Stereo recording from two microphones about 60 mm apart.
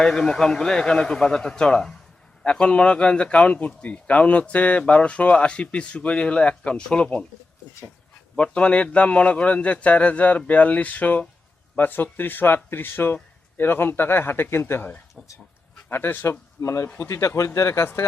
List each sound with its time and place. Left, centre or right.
0.0 s a man's voice: centre
8.4 s speech: centre; by 14.8 s left
15.9 s speech: left
16.6 s speech: left